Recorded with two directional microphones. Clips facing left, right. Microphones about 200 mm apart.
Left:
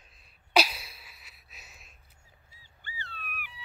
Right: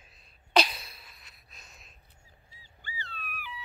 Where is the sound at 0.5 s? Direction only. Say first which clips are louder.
Even; 5° left (ahead or behind).